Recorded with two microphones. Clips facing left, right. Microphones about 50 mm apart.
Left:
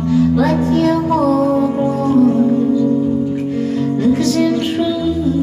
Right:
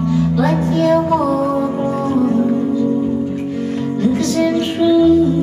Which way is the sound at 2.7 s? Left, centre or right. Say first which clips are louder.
Left 2 dB; right.